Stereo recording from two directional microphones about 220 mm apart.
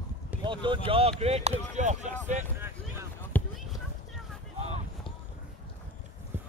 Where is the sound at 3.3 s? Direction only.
5° left (ahead or behind).